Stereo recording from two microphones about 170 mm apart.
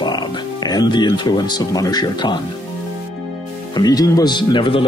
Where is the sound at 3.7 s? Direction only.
20° left (ahead or behind).